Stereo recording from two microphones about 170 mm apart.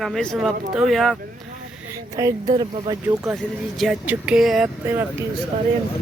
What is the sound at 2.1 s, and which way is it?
Speech, 20° right (ahead or behind).